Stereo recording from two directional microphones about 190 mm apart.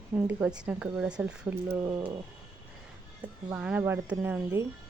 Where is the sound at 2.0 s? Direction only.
25° right (ahead or behind).